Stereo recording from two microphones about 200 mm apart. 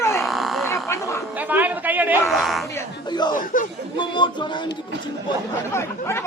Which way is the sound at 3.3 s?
40° left (ahead or behind).